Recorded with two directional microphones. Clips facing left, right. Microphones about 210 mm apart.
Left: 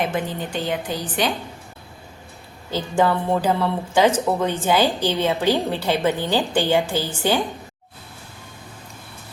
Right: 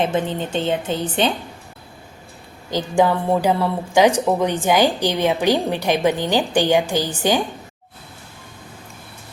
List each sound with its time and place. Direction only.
0.0 s a woman's voice: 25° right (ahead or behind)
2.6 s a woman's voice: 15° right (ahead or behind)